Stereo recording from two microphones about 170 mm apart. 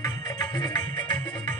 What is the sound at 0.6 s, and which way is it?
Music, 25° left (ahead or behind).